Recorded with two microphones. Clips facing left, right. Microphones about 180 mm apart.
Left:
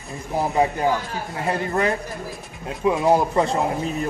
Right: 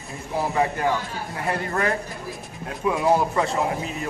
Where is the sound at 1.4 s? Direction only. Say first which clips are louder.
Left 3 dB; 20° left (ahead or behind).